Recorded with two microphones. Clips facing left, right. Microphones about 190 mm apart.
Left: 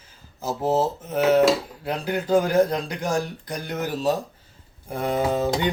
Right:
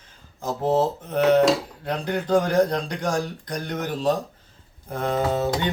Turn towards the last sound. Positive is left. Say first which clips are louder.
# left 1 dB
turn(degrees=15)  # may be behind; listen again after turning